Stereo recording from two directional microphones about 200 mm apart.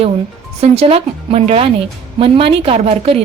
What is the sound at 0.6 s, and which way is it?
A woman's voice, 30° right (ahead or behind).